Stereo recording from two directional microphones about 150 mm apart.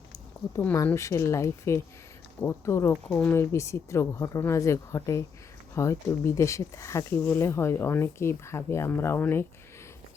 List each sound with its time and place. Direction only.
0.5 s speech: 15° left (ahead or behind)
3.1 s speech: 5° left (ahead or behind)
3.3 s speech: 20° left (ahead or behind)